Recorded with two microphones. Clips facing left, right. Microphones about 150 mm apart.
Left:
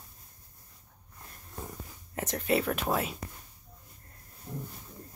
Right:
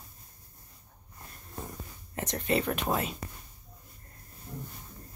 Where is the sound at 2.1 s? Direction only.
5° left (ahead or behind).